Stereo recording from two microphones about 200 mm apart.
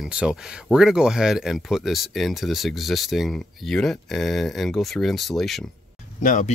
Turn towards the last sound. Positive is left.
turn(degrees=40)  # may be behind; listen again after turning